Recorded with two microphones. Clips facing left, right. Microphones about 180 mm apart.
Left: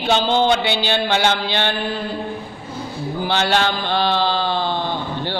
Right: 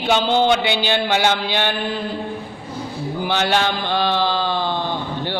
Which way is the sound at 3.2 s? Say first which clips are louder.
Even; 15° right (ahead or behind).